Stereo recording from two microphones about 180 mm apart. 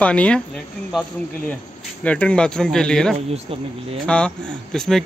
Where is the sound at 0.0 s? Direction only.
5° left (ahead or behind).